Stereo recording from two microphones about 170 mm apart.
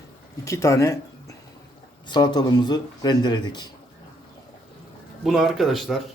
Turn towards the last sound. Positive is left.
turn(degrees=0)  # may be behind; listen again after turning